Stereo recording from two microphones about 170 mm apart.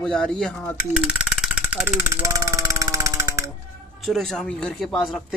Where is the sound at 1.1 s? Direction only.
5° right (ahead or behind).